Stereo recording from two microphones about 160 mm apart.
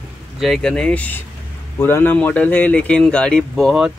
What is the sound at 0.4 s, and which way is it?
Speech, centre (ahead or behind).